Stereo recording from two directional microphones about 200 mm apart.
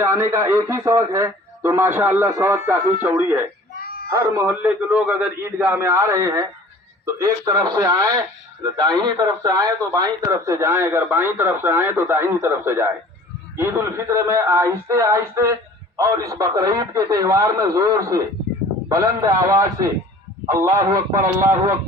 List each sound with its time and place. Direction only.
0.0 s speech: 15° right (ahead or behind)
3.8 s a sound: 50° left (ahead or behind)
4.1 s speech: 10° right (ahead or behind)